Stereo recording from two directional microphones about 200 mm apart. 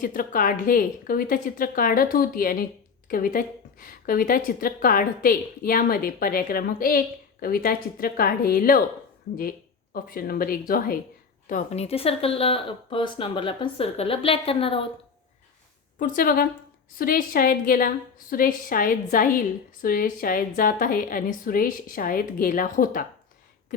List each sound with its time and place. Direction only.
0.0 s a woman's voice: 45° left (ahead or behind); by 14.8 s 25° left (ahead or behind)
16.0 s a woman's voice: 45° left (ahead or behind)